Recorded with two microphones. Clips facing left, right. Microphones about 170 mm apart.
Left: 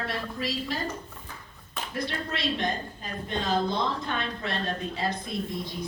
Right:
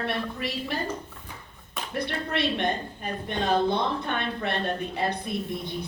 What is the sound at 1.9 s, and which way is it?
A woman's voice, 60° right (ahead or behind).